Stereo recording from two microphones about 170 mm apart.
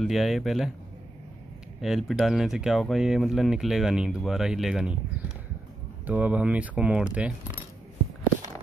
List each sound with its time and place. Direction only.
0.0 s speech: centre (ahead or behind)
1.8 s speech: centre (ahead or behind)
6.0 s speech: 10° right (ahead or behind)